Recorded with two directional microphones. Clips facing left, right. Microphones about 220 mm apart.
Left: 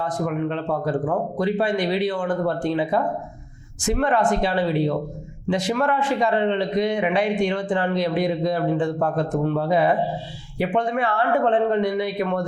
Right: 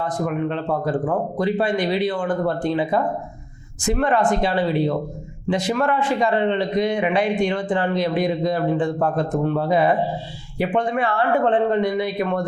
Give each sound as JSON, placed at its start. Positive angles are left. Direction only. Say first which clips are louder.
{"t": 0.0, "sound": "a man's voice", "louder": "right 1 dB", "side_deg": -20}
{"t": 5.5, "sound": "a man's voice", "louder": "right 1 dB", "side_deg": -10}